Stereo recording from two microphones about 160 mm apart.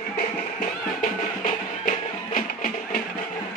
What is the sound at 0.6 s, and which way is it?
Music, 55° left (ahead or behind).